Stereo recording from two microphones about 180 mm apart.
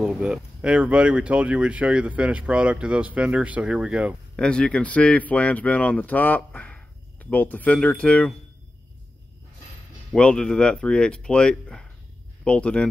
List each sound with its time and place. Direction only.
0.0 s speech: centre (ahead or behind)
4.4 s speech: 5° left (ahead or behind)
10.1 s speech: 5° left (ahead or behind)